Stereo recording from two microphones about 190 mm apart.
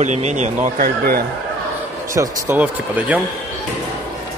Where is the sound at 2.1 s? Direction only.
15° right (ahead or behind).